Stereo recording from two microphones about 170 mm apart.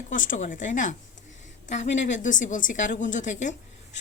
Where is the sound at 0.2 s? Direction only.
50° left (ahead or behind).